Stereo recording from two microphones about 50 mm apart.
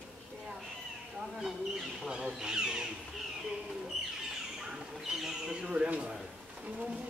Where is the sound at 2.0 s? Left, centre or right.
Centre.